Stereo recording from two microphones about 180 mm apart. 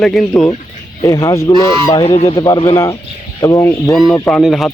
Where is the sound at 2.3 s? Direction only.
25° left (ahead or behind).